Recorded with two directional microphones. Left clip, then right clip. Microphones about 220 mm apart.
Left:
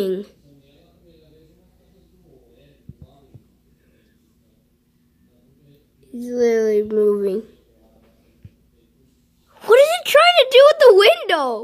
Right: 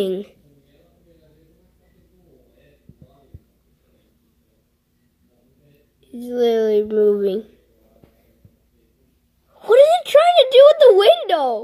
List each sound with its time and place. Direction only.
0.0 s speech: 5° right (ahead or behind)
6.2 s speech: centre (ahead or behind)
9.6 s a woman's voice: 10° left (ahead or behind)